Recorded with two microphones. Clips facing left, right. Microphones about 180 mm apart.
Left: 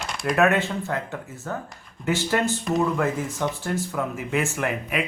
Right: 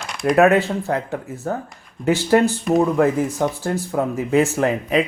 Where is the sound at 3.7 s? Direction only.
30° right (ahead or behind).